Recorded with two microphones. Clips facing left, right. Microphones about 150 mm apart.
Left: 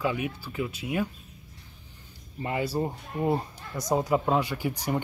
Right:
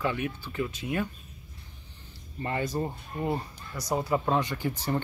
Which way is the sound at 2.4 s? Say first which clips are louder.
Left 2 dB; 10° left (ahead or behind).